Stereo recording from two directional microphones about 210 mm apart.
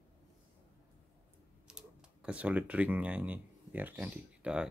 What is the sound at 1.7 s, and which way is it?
Speech, 5° right (ahead or behind).